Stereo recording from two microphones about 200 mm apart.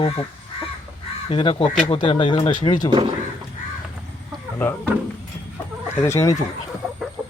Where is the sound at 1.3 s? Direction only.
25° left (ahead or behind).